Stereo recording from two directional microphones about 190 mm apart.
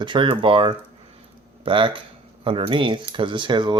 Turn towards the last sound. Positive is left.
turn(degrees=-25)  # may be behind; listen again after turning